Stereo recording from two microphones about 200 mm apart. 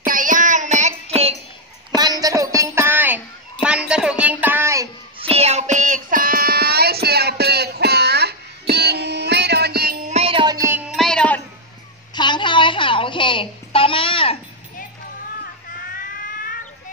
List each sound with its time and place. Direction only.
0.0 s child singing: 40° right (ahead or behind)
2.0 s a sound: 20° right (ahead or behind)
5.2 s child singing: 30° right (ahead or behind); by 9.9 s 50° right (ahead or behind)
10.0 s music: 30° right (ahead or behind)
11.0 s music: 5° left (ahead or behind)
12.2 s a sound: 25° left (ahead or behind)